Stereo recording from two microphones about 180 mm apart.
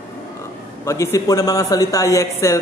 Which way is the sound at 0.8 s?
15° left (ahead or behind).